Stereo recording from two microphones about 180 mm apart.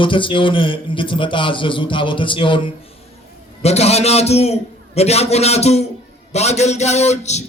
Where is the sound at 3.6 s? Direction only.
35° left (ahead or behind).